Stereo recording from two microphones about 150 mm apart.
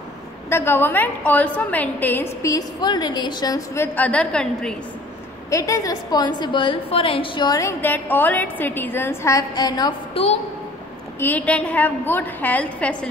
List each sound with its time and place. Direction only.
0.5 s a woman's voice: 15° left (ahead or behind)
5.5 s a woman's voice: 20° left (ahead or behind)
7.8 s a woman's voice: 10° left (ahead or behind); by 10.2 s 25° left (ahead or behind)
11.1 s a woman's voice: 10° left (ahead or behind)